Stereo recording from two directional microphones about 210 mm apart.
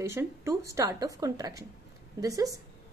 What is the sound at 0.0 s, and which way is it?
A woman's voice, 10° right (ahead or behind).